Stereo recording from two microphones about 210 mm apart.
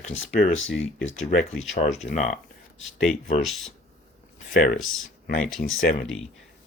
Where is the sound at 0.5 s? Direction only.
65° left (ahead or behind).